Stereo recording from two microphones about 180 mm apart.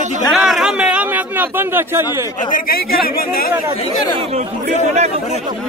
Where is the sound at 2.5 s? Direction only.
55° left (ahead or behind).